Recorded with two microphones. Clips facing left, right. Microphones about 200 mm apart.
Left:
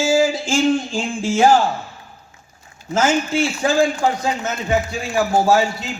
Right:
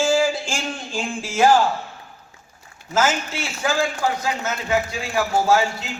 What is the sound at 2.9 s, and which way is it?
Speech, 30° left (ahead or behind).